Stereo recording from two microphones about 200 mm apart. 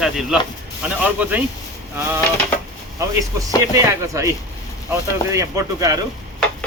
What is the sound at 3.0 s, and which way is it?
Speech, 15° right (ahead or behind).